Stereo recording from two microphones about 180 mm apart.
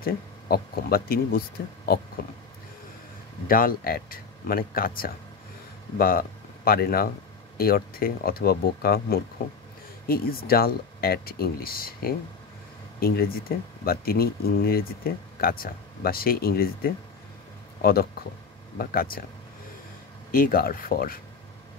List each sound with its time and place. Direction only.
0.0 s speech: 55° left (ahead or behind)
3.4 s speech: 50° left (ahead or behind)
20.2 s speech: 55° left (ahead or behind)